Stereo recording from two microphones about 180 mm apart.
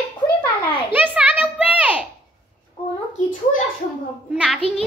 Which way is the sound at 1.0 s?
5° right (ahead or behind).